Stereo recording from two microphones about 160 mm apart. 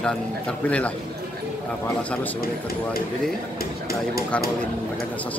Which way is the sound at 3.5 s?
70° left (ahead or behind).